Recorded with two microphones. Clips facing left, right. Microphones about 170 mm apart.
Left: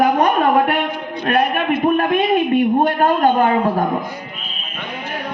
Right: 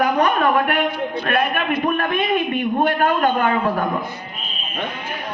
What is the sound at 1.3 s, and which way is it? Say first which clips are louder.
A woman's voice: left 5 dB; 35° left (ahead or behind).